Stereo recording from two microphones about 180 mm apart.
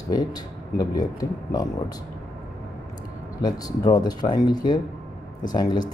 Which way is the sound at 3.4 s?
20° left (ahead or behind).